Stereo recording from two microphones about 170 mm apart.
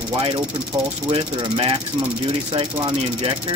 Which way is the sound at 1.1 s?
35° right (ahead or behind).